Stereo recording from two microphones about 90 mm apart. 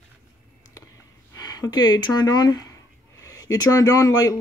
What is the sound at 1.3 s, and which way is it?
A man's voice, 45° left (ahead or behind).